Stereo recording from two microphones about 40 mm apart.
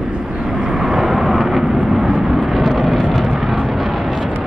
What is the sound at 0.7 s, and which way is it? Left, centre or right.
Vehicle, centre.